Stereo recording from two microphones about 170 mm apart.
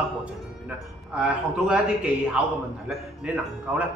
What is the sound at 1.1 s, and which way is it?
A man's voice, 5° right (ahead or behind).